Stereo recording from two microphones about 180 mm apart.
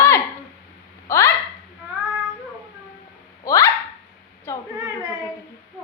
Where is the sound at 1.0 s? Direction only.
15° left (ahead or behind).